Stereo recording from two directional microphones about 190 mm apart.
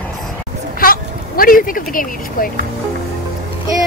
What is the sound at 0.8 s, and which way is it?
Speech, 50° left (ahead or behind).